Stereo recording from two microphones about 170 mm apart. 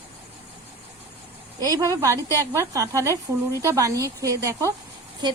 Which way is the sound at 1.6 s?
20° right (ahead or behind).